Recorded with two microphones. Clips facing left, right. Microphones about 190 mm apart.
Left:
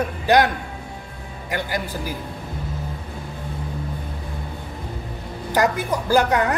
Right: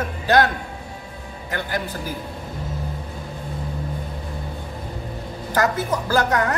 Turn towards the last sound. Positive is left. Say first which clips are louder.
# left 2 dB
turn(degrees=15)  # may be behind; listen again after turning